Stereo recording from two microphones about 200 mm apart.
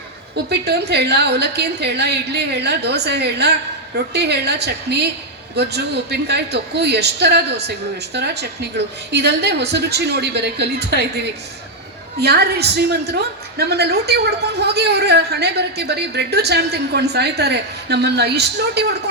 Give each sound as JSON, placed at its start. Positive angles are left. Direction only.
{"t": 0.5, "sound": "a woman's voice", "side_deg": -55}